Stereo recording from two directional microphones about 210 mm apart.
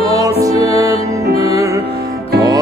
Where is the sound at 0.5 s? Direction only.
30° left (ahead or behind).